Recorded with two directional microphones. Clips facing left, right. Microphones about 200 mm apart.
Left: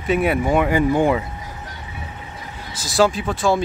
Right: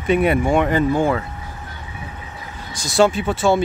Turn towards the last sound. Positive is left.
turn(degrees=0)  # may be behind; listen again after turning